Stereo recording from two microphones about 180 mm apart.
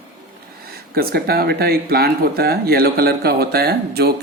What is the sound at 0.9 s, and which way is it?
Speech, 60° right (ahead or behind).